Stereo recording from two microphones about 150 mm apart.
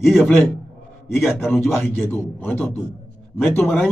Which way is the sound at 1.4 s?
15° left (ahead or behind).